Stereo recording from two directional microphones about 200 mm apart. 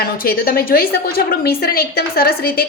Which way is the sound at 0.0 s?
50° left (ahead or behind).